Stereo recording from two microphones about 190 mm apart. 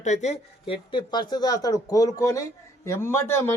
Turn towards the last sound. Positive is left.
turn(degrees=10)  # may be behind; listen again after turning